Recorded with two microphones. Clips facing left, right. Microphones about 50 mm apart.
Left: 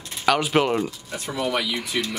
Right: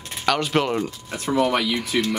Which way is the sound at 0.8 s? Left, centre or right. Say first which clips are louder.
Right 4 dB; right.